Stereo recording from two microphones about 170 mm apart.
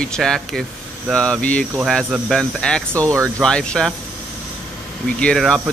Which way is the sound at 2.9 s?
15° right (ahead or behind).